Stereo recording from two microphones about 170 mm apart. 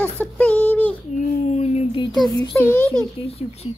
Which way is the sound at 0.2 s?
10° left (ahead or behind).